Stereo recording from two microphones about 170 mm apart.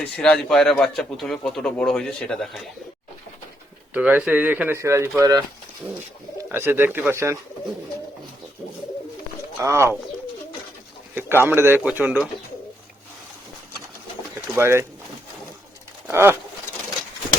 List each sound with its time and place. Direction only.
0.0 s a man's voice: 5° left (ahead or behind)
3.9 s speech: 10° right (ahead or behind)
6.5 s speech: 10° right (ahead or behind)
9.6 s speech: 15° right (ahead or behind)
11.1 s speech: 15° right (ahead or behind)
14.5 s speech: 15° right (ahead or behind)
16.1 s speech: 15° right (ahead or behind)